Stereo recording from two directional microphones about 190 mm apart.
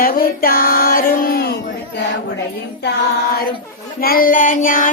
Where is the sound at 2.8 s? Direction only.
55° left (ahead or behind).